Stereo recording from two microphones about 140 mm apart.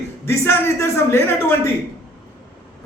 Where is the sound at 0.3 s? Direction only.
20° left (ahead or behind).